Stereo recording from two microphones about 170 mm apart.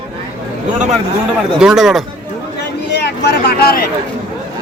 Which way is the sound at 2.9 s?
90° left.